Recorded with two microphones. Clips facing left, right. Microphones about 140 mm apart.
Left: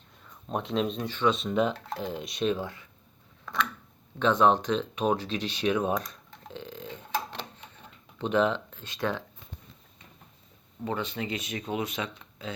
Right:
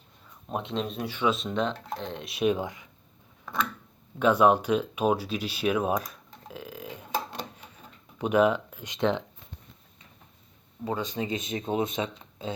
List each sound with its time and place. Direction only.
0.4 s speech: centre (ahead or behind)
1.4 s speech: 5° left (ahead or behind); by 2.8 s 15° right (ahead or behind)
4.2 s a sound: 10° right (ahead or behind)
10.8 s speech: 15° right (ahead or behind)